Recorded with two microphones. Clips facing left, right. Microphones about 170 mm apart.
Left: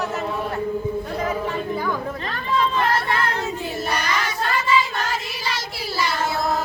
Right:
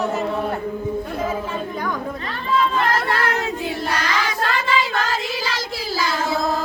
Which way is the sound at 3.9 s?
90° right.